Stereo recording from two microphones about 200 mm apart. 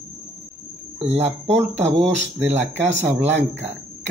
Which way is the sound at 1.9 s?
65° right (ahead or behind).